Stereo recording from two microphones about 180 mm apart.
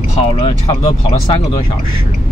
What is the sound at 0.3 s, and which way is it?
Speech, 30° left (ahead or behind).